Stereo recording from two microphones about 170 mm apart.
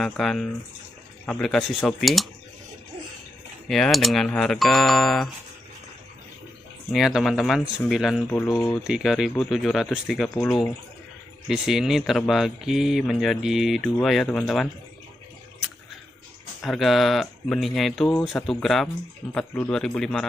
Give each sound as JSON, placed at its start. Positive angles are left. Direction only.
{"t": 0.0, "sound": "speech", "side_deg": 0}
{"t": 3.6, "sound": "speech", "side_deg": 0}
{"t": 6.9, "sound": "speech", "side_deg": 0}
{"t": 8.5, "sound": "speech", "side_deg": 20}
{"t": 8.8, "sound": "speech", "side_deg": -5}
{"t": 11.4, "sound": "speech", "side_deg": 0}
{"t": 16.6, "sound": "speech", "side_deg": 0}